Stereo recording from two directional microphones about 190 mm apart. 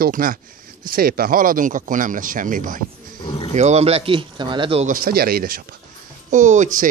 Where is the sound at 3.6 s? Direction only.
35° right (ahead or behind).